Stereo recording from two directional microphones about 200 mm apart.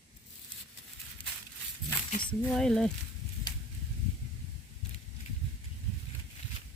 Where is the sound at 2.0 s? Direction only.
45° left (ahead or behind).